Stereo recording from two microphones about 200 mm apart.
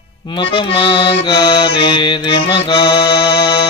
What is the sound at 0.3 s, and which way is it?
Music, 25° left (ahead or behind).